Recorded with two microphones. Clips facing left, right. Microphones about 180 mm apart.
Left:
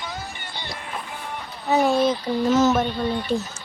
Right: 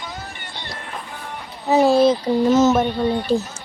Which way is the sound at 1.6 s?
30° right (ahead or behind).